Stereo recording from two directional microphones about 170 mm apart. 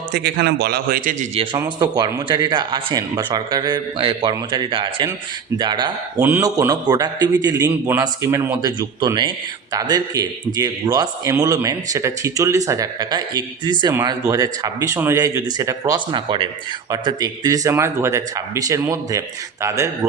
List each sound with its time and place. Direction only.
0.1 s a man's voice: 75° right (ahead or behind); by 1.3 s 55° right (ahead or behind)
1.5 s a man's voice: 25° right (ahead or behind)